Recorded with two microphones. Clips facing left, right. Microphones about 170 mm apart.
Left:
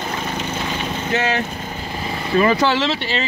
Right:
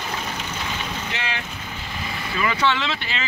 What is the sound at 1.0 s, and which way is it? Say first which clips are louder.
Speech: left 10 dB; 40° left (ahead or behind).